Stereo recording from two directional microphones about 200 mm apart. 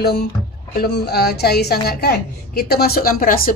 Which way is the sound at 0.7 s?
55° left (ahead or behind).